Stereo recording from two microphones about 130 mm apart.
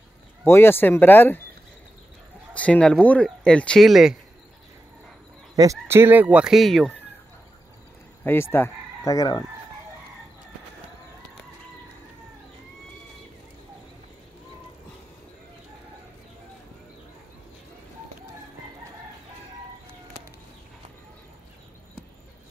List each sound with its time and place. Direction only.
0.5 s speech: 20° left (ahead or behind)
2.5 s speech: 10° left (ahead or behind)
5.6 s speech: 20° right (ahead or behind); by 6.9 s centre (ahead or behind)
8.2 s speech: 15° left (ahead or behind)